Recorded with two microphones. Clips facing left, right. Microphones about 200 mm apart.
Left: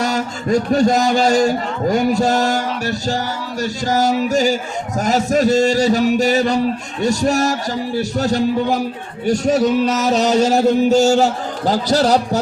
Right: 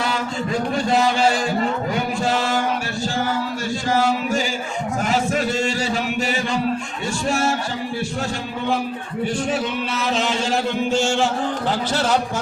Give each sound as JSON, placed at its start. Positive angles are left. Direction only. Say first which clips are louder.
{"t": 0.0, "sound": "a man's voice", "louder": "left 3 dB", "side_deg": 45}
{"t": 3.8, "sound": "speech", "louder": "left 3 dB", "side_deg": 40}